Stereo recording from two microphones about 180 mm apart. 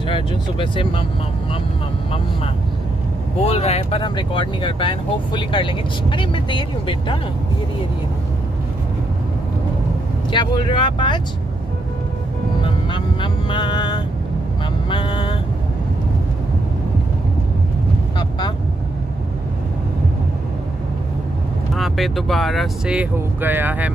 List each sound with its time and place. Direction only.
0.0 s speech: 30° left (ahead or behind)
3.4 s speech: 35° left (ahead or behind)
10.3 s speech: 25° left (ahead or behind)
12.6 s music: 25° left (ahead or behind)
14.9 s vehicle: 25° left (ahead or behind)
21.7 s speech: centre (ahead or behind)